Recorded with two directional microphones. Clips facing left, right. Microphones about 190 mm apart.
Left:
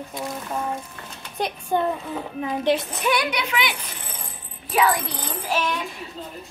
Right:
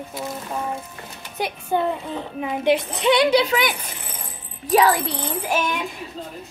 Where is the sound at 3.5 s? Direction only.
45° right (ahead or behind).